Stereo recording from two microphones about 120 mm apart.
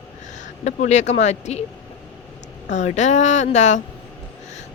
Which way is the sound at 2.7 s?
85° left.